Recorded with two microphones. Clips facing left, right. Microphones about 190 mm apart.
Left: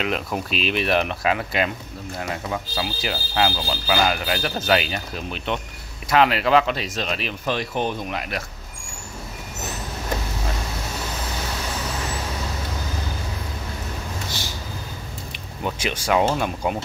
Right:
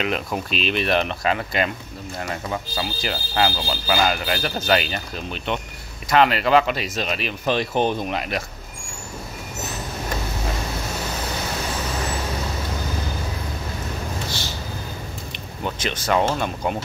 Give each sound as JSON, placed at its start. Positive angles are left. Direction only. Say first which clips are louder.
{"t": 0.0, "sound": "speech", "louder": "even", "side_deg": 0}
{"t": 7.4, "sound": "speech", "louder": "right 4 dB", "side_deg": -25}
{"t": 15.6, "sound": "speech", "louder": "left 1 dB", "side_deg": 10}